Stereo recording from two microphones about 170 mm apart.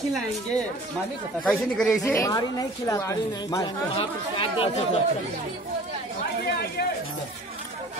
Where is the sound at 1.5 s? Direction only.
Centre (ahead or behind).